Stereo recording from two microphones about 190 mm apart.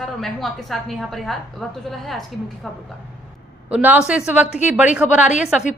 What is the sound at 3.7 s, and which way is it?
A woman's voice, 5° right (ahead or behind).